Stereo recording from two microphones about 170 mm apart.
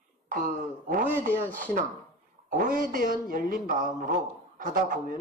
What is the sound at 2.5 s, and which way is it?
Speech, 55° right (ahead or behind).